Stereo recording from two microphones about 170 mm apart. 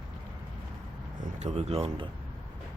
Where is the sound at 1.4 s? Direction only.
40° right (ahead or behind).